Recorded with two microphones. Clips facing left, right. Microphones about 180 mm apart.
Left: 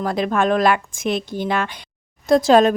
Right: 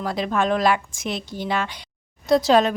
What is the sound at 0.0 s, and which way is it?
Speech, 50° left (ahead or behind).